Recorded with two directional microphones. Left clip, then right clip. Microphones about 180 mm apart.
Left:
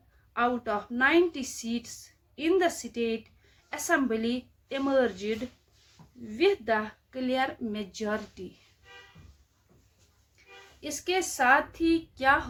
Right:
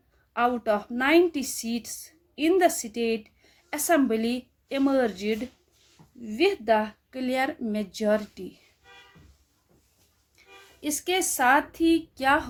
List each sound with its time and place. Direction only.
0.3 s a woman's voice: 35° right (ahead or behind)
10.8 s a woman's voice: 35° right (ahead or behind)